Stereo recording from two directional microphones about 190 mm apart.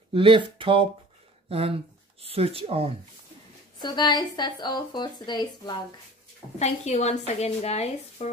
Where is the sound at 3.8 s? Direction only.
20° left (ahead or behind).